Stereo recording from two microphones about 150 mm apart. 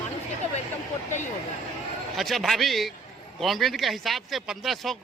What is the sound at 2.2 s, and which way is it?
Speech, centre (ahead or behind).